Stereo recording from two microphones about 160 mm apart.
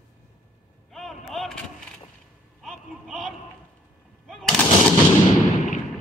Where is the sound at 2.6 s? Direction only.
Centre (ahead or behind).